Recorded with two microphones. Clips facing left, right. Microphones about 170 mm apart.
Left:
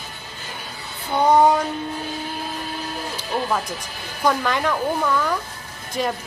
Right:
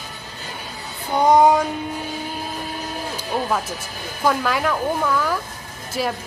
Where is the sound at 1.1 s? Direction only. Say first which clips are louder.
Right 1 dB; 10° right (ahead or behind).